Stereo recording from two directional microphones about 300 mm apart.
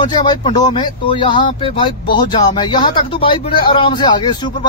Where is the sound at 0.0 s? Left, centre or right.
Centre.